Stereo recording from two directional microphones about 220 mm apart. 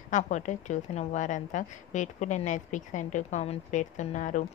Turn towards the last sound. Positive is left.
turn(degrees=35)  # may be behind; listen again after turning